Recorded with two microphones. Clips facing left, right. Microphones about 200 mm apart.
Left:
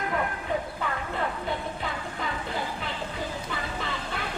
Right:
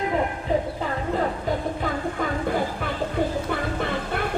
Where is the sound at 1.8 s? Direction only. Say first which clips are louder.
Right 7 dB; 50° right (ahead or behind).